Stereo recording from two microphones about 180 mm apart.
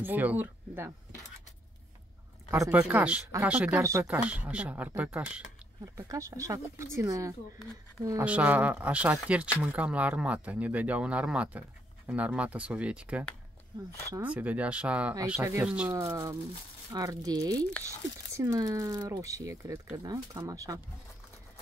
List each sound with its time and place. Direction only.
0.0 s speech: 10° right (ahead or behind)
2.8 s speech: 5° right (ahead or behind)
5.9 s speech: 15° right (ahead or behind)
8.2 s speech: 10° right (ahead or behind)